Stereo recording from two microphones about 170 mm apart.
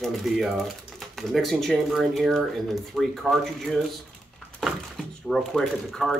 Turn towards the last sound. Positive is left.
turn(degrees=0)  # may be behind; listen again after turning